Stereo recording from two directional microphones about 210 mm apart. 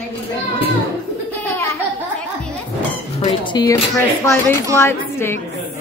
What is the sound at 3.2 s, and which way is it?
A woman's voice, 20° left (ahead or behind).